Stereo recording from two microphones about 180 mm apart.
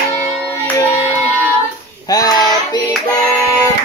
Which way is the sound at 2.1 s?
20° left (ahead or behind).